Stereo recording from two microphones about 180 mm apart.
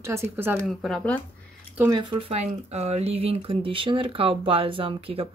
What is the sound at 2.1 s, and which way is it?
Speech, 35° right (ahead or behind).